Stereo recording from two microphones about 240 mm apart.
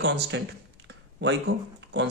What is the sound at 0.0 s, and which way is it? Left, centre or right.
Speech, right.